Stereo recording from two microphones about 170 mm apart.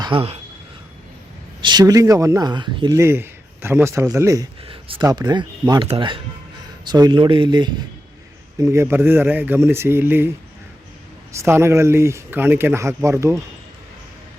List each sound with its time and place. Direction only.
0.0 s speech: 30° right (ahead or behind)
1.6 s speech: 25° right (ahead or behind)
4.7 s speech: 30° right (ahead or behind)
8.6 s speech: 15° right (ahead or behind)